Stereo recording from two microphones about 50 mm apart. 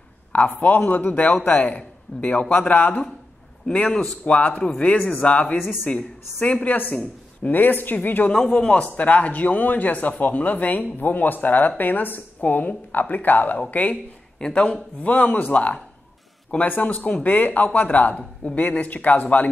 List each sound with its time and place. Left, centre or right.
0.3 s a man's voice: left
4.9 s speech: left
5.2 s a man's voice: left
8.3 s a man's voice: centre
8.8 s speech: left
14.4 s a man's voice: centre